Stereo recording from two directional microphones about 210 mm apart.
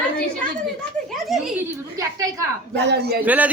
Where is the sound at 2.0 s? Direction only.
15° right (ahead or behind).